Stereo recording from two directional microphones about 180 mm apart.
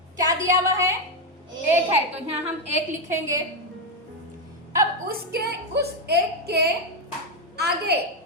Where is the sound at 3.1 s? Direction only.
20° right (ahead or behind).